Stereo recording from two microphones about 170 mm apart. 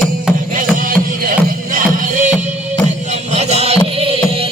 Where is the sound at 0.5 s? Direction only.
55° right (ahead or behind).